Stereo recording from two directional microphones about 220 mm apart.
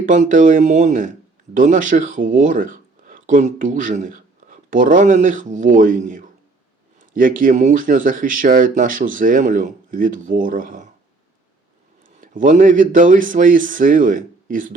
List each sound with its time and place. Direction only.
0.0 s speech: 35° right (ahead or behind)
12.2 s speech: 35° right (ahead or behind)